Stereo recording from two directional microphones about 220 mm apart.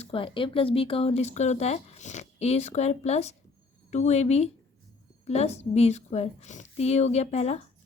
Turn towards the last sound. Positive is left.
turn(degrees=30)  # may be behind; listen again after turning